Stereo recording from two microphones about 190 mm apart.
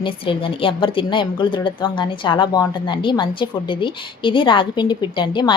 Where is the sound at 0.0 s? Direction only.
25° left (ahead or behind).